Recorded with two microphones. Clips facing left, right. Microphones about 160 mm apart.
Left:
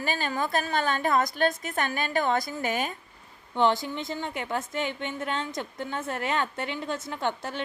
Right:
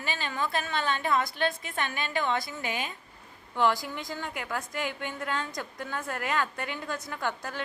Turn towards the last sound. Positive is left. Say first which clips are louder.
# left 3 dB
turn(degrees=25)  # may be behind; listen again after turning